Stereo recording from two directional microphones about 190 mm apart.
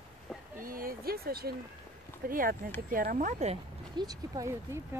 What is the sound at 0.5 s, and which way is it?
Speech, 50° right (ahead or behind).